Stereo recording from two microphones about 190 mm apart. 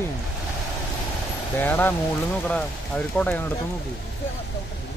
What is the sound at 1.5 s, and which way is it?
Speech, 10° left (ahead or behind).